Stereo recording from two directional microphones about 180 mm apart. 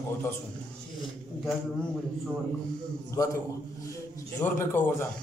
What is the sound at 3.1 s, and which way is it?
Speech, 15° left (ahead or behind).